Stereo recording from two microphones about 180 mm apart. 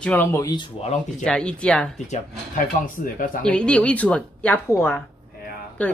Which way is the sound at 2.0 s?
50° left (ahead or behind).